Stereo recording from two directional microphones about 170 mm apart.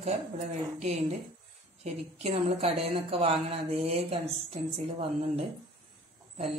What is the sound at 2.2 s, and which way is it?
A woman's voice, 35° right (ahead or behind).